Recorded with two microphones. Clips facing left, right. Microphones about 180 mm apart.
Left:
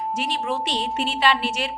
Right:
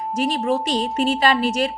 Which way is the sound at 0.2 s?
40° right (ahead or behind).